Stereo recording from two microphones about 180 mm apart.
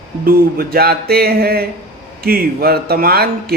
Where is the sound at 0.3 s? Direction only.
55° right (ahead or behind).